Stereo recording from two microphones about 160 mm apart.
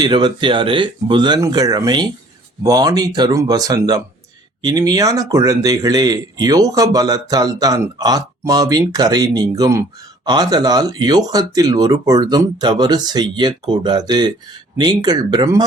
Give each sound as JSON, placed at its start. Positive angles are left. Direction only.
{"t": 0.0, "sound": "speech", "side_deg": -25}